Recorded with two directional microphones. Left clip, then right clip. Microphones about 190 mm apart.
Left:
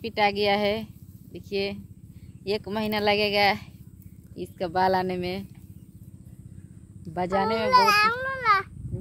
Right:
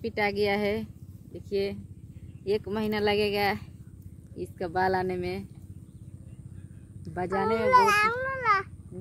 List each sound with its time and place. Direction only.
0.0 s speech: 40° left (ahead or behind)
7.2 s speech: 40° left (ahead or behind)
7.7 s baby cry: 30° left (ahead or behind)